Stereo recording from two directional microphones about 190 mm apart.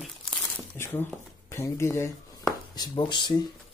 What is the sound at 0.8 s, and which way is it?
Speech, 10° left (ahead or behind).